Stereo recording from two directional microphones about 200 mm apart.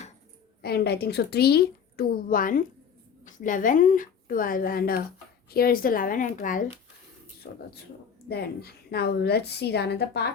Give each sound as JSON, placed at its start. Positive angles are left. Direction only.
{"t": 0.6, "sound": "a woman's voice", "side_deg": 55}